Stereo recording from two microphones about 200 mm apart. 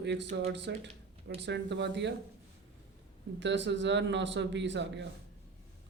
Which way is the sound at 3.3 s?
65° right (ahead or behind).